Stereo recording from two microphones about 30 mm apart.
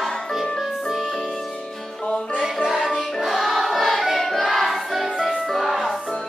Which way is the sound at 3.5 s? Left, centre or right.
Centre.